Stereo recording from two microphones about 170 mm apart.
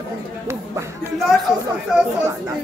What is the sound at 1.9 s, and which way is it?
Speech, 5° right (ahead or behind).